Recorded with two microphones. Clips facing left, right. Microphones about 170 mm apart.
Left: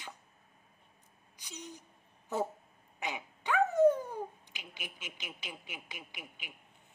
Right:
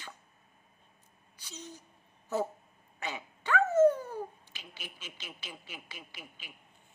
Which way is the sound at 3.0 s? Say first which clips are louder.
Even; 15° left (ahead or behind).